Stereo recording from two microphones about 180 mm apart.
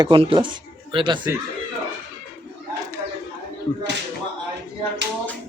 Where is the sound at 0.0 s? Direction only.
30° right (ahead or behind).